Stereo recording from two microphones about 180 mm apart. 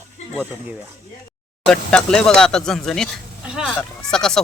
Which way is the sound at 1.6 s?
5° left (ahead or behind).